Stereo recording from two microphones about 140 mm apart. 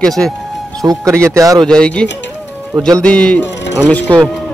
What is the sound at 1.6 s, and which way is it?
Speech, 5° left (ahead or behind).